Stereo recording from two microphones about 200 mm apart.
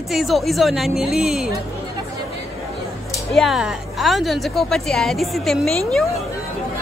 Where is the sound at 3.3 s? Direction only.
Centre (ahead or behind).